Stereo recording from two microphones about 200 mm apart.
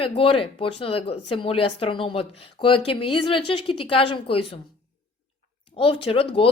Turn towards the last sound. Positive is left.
turn(degrees=25)  # may be behind; listen again after turning